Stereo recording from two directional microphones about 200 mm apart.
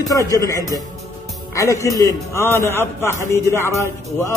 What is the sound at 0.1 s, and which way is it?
Speech, 15° left (ahead or behind).